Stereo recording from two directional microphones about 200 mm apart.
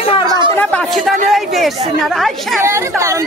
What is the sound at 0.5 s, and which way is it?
A woman's voice, 5° left (ahead or behind).